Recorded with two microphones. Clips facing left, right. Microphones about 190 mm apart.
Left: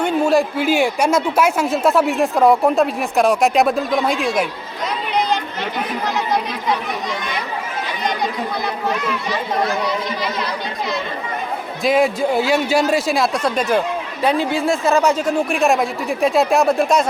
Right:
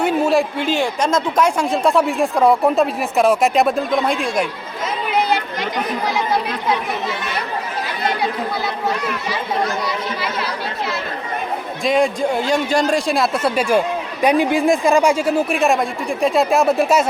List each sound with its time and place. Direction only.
0.0 s a man's voice: centre (ahead or behind)
6.1 s speech: 10° right (ahead or behind)
8.0 s speech: 5° right (ahead or behind)
9.8 s a man's voice: 5° right (ahead or behind)